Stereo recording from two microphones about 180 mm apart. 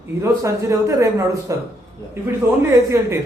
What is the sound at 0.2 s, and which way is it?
A man's voice, 15° right (ahead or behind).